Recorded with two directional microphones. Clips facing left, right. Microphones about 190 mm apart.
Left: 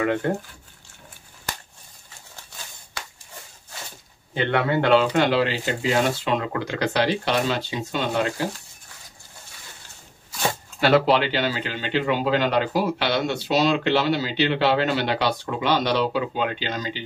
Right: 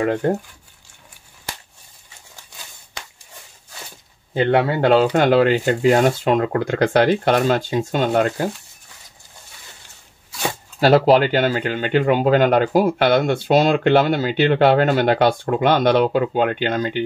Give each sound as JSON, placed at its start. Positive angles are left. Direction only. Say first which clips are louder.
{"t": 0.0, "sound": "speech", "louder": "right 3 dB", "side_deg": -40}
{"t": 4.3, "sound": "speech", "louder": "right 5 dB", "side_deg": -35}
{"t": 10.8, "sound": "speech", "louder": "right 5 dB", "side_deg": -40}